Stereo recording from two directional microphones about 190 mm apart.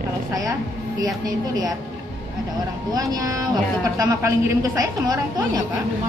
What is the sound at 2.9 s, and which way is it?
Speech, 20° right (ahead or behind).